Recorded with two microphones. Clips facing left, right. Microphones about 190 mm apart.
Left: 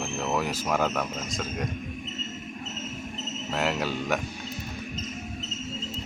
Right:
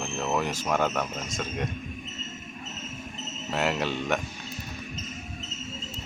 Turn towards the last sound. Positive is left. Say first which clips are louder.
# even
turn(degrees=0)  # may be behind; listen again after turning